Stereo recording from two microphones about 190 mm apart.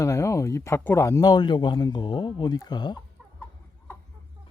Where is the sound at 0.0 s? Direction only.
15° left (ahead or behind).